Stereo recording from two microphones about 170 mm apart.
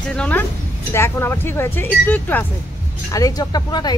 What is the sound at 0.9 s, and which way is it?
Speech, 15° left (ahead or behind).